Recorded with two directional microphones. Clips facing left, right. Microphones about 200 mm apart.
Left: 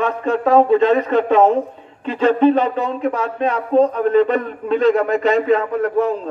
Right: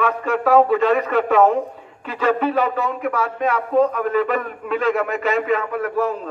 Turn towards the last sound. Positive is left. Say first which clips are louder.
# left 4 dB
turn(degrees=30)  # may be behind; listen again after turning